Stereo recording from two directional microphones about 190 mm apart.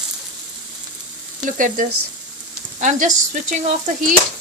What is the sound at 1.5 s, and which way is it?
Speech, 45° right (ahead or behind).